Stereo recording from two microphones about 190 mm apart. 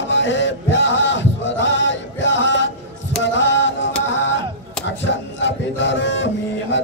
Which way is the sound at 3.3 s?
70° left (ahead or behind).